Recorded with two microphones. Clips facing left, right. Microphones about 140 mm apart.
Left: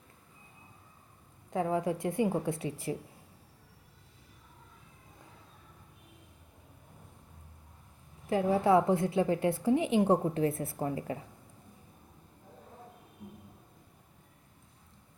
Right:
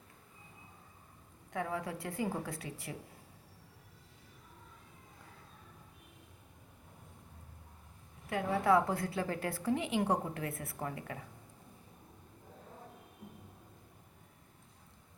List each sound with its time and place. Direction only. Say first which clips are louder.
1.5 s a woman's voice: left 7 dB; 25° left (ahead or behind)
8.3 s a woman's voice: left 4 dB; 25° left (ahead or behind)